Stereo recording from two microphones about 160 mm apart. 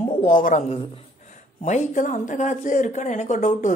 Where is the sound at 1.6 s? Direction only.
50° left (ahead or behind).